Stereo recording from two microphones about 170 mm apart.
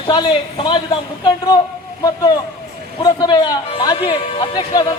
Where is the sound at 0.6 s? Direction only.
30° left (ahead or behind).